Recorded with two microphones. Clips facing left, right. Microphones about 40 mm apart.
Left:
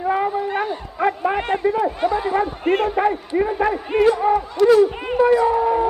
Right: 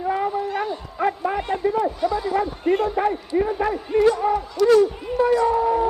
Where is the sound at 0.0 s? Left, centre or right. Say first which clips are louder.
Left 3 dB; centre.